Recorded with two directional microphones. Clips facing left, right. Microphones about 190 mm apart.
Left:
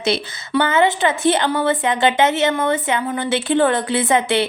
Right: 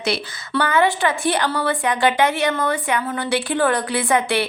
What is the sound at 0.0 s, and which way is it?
A woman's voice, 25° left (ahead or behind).